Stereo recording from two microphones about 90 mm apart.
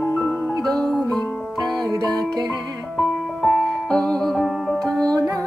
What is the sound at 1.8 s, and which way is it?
Music, 40° right (ahead or behind).